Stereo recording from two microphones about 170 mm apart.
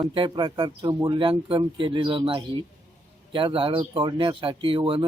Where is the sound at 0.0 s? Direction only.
30° right (ahead or behind).